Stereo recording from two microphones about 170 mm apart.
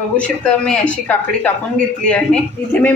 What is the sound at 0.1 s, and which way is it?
Speech, 5° left (ahead or behind).